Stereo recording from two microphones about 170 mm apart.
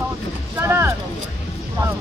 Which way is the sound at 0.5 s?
15° right (ahead or behind).